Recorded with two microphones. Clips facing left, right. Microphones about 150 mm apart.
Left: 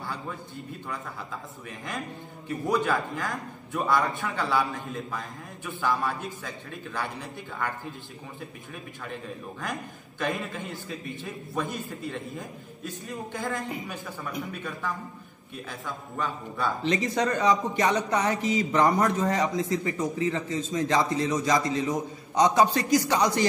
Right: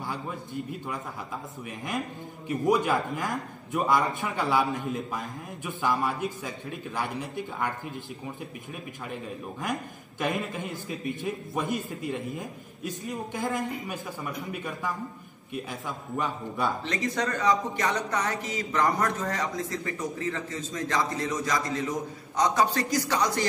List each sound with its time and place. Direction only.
2.4 s a man's voice: 20° right (ahead or behind)
10.1 s a man's voice: 20° right (ahead or behind)
16.2 s a man's voice: 20° right (ahead or behind)
16.8 s a man's voice: 20° left (ahead or behind)